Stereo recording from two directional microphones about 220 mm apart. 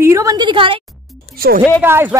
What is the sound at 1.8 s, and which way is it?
Speech, 10° right (ahead or behind).